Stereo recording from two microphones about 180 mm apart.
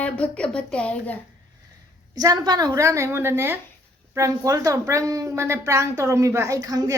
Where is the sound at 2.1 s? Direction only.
20° right (ahead or behind).